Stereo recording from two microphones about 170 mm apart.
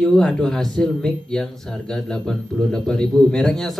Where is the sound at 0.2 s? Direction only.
5° left (ahead or behind).